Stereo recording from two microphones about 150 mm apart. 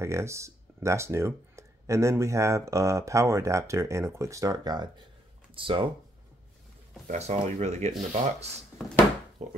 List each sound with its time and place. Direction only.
0.0 s speech: 20° right (ahead or behind); by 5.9 s 35° right (ahead or behind)
7.1 s speech: 50° right (ahead or behind)